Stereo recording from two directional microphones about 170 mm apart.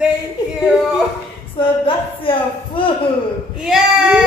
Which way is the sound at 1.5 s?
30° left (ahead or behind).